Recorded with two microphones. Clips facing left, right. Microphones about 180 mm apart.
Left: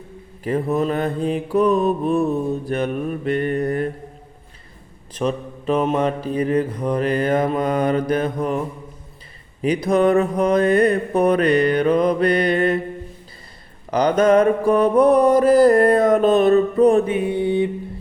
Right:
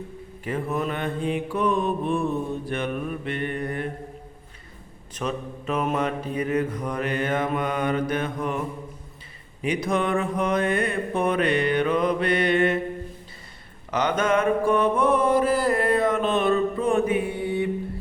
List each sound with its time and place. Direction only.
0.4 s mantra: 35° left (ahead or behind)
5.1 s mantra: 30° left (ahead or behind)
13.9 s mantra: 35° left (ahead or behind)
17.1 s mantra: 25° left (ahead or behind)